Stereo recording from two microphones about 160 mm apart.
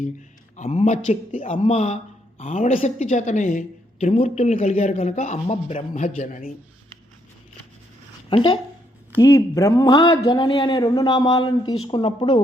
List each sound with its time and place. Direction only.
0.5 s speech: 45° left (ahead or behind)
8.3 s a woman's voice: 35° left (ahead or behind)
9.1 s speech: 20° left (ahead or behind)